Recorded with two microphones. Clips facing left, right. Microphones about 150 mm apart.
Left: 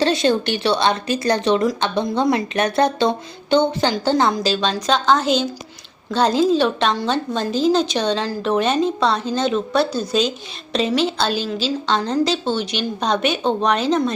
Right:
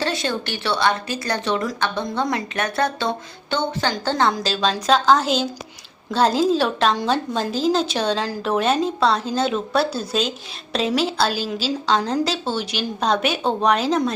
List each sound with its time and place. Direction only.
0.0 s a woman's voice: 20° left (ahead or behind)
4.3 s a woman's voice: centre (ahead or behind)